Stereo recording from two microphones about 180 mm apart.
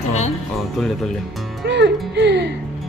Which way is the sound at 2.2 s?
70° right (ahead or behind).